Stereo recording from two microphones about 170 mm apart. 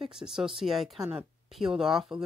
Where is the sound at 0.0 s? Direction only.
Centre (ahead or behind).